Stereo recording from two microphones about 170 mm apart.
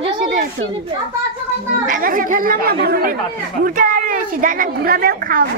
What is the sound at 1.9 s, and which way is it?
A woman's voice, 55° right (ahead or behind).